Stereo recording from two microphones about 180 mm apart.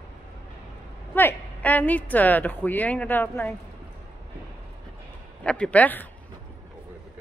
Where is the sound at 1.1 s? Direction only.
10° left (ahead or behind).